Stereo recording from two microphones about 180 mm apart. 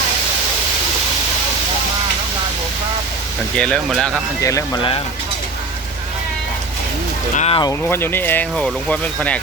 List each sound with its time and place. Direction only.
3.6 s speech: 5° left (ahead or behind)
4.4 s speech: 20° left (ahead or behind)
7.3 s speech: 35° left (ahead or behind)
7.6 s speech: 15° left (ahead or behind)